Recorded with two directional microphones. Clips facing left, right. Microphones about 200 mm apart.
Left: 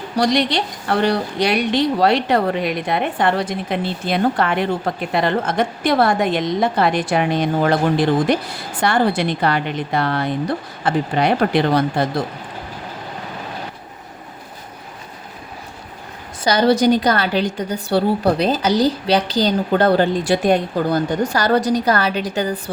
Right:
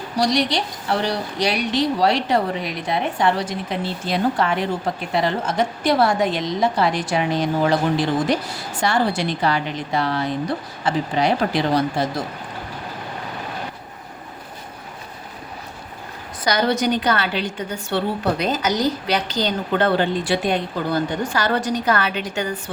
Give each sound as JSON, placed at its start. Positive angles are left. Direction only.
{"t": 0.2, "sound": "a woman's voice", "side_deg": 60}
{"t": 16.4, "sound": "a woman's voice", "side_deg": 30}